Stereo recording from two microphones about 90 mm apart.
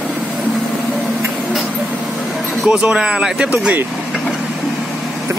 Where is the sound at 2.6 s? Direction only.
10° right (ahead or behind).